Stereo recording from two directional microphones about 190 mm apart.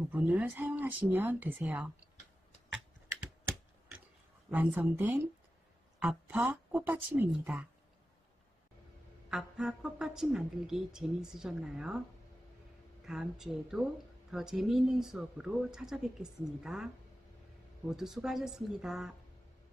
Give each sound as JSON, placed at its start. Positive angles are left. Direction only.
{"t": 0.0, "sound": "speech", "side_deg": -5}
{"t": 2.7, "sound": "typing", "side_deg": -10}
{"t": 4.5, "sound": "speech", "side_deg": -10}
{"t": 9.3, "sound": "a woman's voice", "side_deg": -5}
{"t": 13.0, "sound": "a woman's voice", "side_deg": -5}